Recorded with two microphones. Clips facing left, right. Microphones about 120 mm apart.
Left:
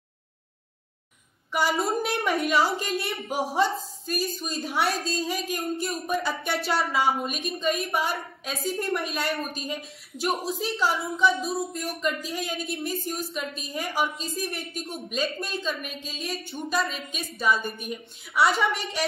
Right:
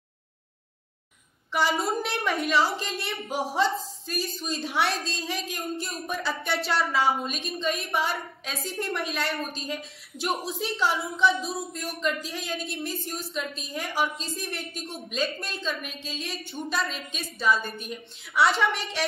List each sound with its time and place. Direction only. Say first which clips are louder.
1.8 s a woman's voice: left 2 dB; 5° left (ahead or behind)